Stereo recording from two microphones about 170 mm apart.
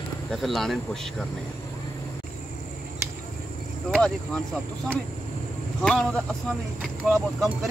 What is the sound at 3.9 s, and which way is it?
Speech, 5° left (ahead or behind).